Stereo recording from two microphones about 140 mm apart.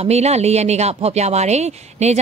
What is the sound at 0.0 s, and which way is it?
Speech, 50° right (ahead or behind).